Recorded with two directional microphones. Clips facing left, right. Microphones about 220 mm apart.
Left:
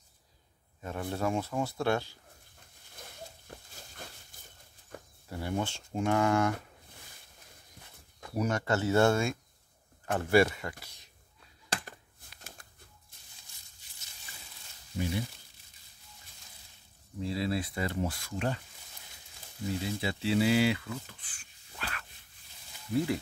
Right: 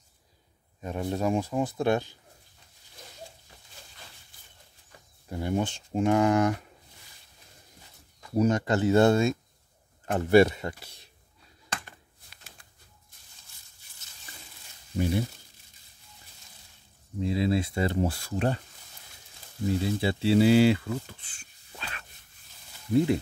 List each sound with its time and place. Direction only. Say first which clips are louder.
0.7 s speech: right 4 dB; 20° right (ahead or behind)
3.4 s a sound: left 5 dB; 50° left (ahead or behind)
5.3 s speech: right 5 dB; 20° right (ahead or behind)
8.4 s speech: right 6 dB; 20° right (ahead or behind)
12.4 s a sound: left 4 dB; 45° left (ahead or behind)
15.0 s speech: right 6 dB; 50° right (ahead or behind)
17.2 s speech: right 6 dB; 20° right (ahead or behind); by 18.6 s 35° right (ahead or behind)
19.8 s speech: right 6 dB; 30° right (ahead or behind)